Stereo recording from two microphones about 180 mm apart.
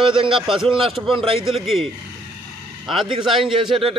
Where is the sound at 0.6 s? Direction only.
30° right (ahead or behind).